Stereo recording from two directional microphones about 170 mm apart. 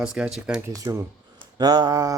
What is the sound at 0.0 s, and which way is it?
Speech, 5° right (ahead or behind).